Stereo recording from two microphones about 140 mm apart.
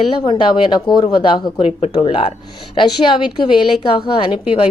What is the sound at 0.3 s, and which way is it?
Speech, 35° left (ahead or behind).